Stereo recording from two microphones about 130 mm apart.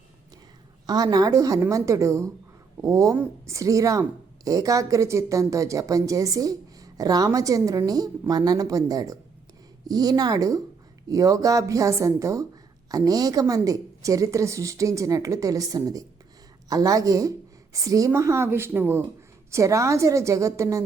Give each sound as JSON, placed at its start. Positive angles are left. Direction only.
{"t": 0.9, "sound": "a woman's voice", "side_deg": -30}